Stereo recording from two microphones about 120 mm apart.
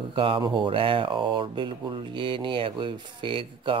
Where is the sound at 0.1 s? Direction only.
45° right (ahead or behind).